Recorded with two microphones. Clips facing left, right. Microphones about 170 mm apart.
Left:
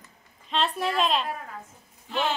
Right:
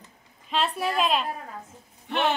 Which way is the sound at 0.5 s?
5° right (ahead or behind).